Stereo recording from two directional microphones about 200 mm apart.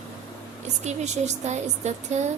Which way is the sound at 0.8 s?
35° right (ahead or behind).